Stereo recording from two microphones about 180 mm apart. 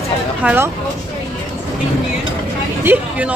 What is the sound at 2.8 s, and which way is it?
Speech, 5° right (ahead or behind).